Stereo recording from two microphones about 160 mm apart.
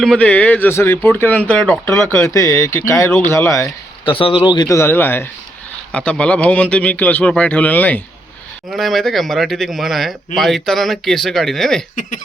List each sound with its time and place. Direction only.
0.0 s a man's voice: 5° left (ahead or behind)
4.0 s a man's voice: 35° left (ahead or behind); by 11.8 s centre (ahead or behind)